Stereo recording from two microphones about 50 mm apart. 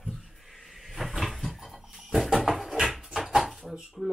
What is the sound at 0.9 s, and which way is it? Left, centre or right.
Cupboard open or close, centre.